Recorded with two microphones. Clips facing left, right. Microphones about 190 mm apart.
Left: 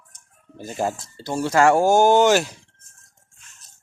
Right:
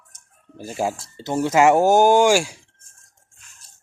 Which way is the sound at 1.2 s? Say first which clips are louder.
Right 1 dB; 20° right (ahead or behind).